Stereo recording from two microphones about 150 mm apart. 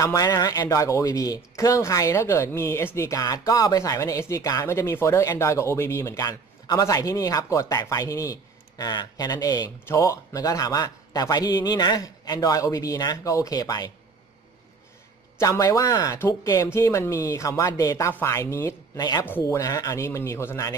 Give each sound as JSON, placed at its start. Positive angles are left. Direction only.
{"t": 0.0, "sound": "speech", "side_deg": 25}
{"t": 15.3, "sound": "speech", "side_deg": 20}
{"t": 19.2, "sound": "speech", "side_deg": 15}